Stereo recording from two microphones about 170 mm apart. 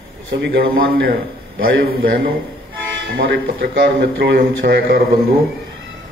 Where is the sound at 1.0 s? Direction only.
60° right (ahead or behind).